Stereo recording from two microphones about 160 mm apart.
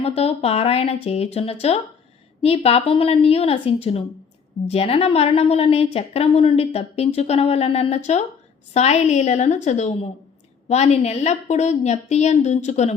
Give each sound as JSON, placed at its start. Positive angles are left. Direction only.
{"t": 0.0, "sound": "a woman's voice", "side_deg": 40}